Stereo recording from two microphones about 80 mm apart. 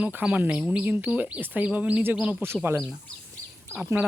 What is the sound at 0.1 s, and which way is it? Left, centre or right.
Speech, centre.